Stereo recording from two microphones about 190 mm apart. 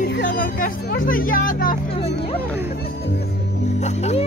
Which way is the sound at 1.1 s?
45° left (ahead or behind).